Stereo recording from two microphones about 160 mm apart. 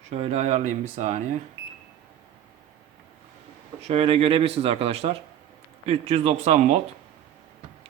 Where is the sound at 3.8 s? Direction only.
35° right (ahead or behind).